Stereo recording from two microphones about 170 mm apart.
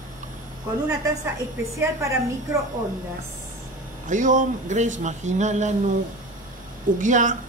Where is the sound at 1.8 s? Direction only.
15° right (ahead or behind).